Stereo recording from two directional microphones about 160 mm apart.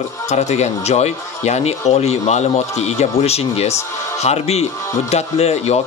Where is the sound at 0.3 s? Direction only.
45° left (ahead or behind).